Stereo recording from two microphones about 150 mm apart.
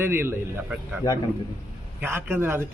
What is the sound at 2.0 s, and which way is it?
Speech, 15° right (ahead or behind).